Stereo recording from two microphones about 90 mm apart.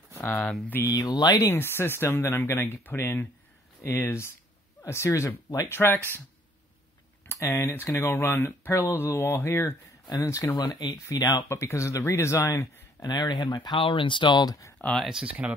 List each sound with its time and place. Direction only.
0.2 s speech: 20° left (ahead or behind)
0.8 s speech: 45° left (ahead or behind)
1.3 s speech: 25° left (ahead or behind)
5.7 s speech: 25° left (ahead or behind)
7.2 s speech: 30° left (ahead or behind)
10.0 s speech: 40° left (ahead or behind)
10.5 s speech: 55° left (ahead or behind)
11.1 s speech: 40° left (ahead or behind)
13.0 s speech: 55° left (ahead or behind)
13.7 s speech: 70° left (ahead or behind); by 14.6 s 50° left (ahead or behind)
15.0 s speech: 5° right (ahead or behind)